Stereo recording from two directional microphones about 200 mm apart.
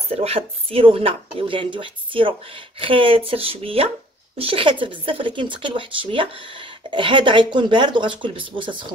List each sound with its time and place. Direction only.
0.1 s speech: 30° right (ahead or behind)